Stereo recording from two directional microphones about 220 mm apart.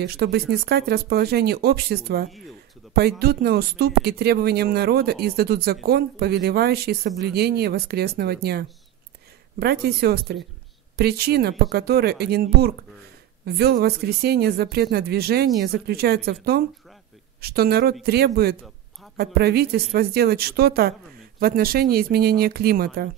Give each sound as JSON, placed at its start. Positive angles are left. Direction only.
{"t": 0.0, "sound": "a woman's voice", "side_deg": -45}